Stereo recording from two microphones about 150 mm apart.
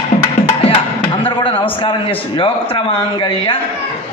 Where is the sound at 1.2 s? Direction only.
35° left (ahead or behind).